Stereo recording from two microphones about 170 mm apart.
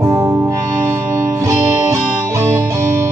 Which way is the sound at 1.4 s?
20° right (ahead or behind).